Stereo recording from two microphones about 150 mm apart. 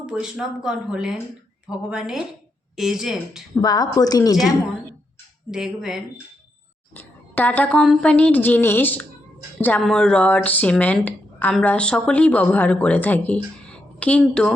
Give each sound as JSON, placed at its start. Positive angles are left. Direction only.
{"t": 0.0, "sound": "speech", "side_deg": -5}
{"t": 3.5, "sound": "a woman's voice", "side_deg": 25}
{"t": 5.5, "sound": "speech", "side_deg": -5}
{"t": 6.9, "sound": "a woman's voice", "side_deg": 10}